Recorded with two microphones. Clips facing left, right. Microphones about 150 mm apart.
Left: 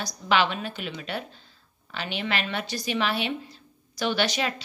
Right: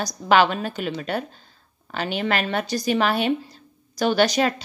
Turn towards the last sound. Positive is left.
turn(degrees=-40)  # may be behind; listen again after turning